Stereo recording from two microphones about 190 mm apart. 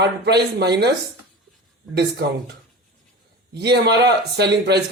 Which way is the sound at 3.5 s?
60° right (ahead or behind).